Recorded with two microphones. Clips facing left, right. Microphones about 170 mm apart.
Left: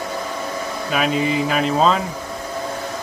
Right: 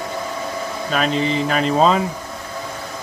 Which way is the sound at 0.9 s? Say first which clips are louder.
Even; 5° left (ahead or behind).